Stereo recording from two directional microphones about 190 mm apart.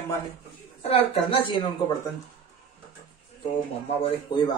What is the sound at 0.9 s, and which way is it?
Speech, 30° left (ahead or behind).